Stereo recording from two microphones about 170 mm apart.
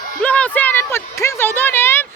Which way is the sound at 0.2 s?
10° left (ahead or behind).